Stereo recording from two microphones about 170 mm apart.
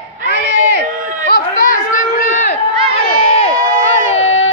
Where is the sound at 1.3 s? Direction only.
55° left (ahead or behind).